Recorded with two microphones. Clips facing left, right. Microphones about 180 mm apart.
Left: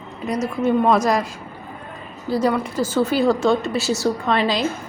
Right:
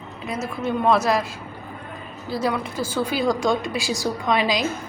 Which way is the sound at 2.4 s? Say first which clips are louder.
Left 4 dB; 10° right (ahead or behind).